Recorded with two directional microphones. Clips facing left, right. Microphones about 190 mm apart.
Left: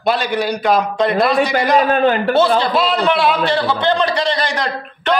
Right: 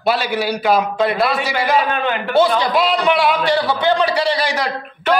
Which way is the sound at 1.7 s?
40° left (ahead or behind).